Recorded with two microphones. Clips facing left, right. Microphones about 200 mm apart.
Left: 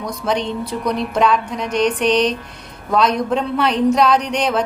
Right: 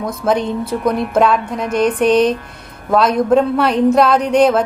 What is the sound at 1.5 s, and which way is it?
Speech, 55° right (ahead or behind).